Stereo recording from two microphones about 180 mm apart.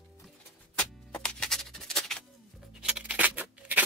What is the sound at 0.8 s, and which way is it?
Music, 5° left (ahead or behind).